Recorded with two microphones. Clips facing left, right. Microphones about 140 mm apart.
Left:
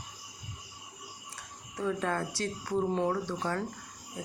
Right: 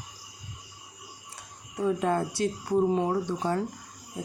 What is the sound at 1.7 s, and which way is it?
Speech, 15° right (ahead or behind).